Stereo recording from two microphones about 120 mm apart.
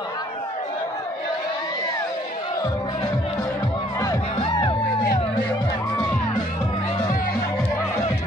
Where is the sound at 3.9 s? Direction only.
25° left (ahead or behind).